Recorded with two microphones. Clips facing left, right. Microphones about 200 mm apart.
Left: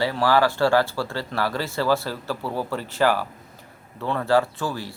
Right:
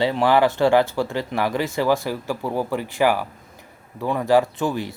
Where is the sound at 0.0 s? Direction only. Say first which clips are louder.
Right 3 dB; 20° right (ahead or behind).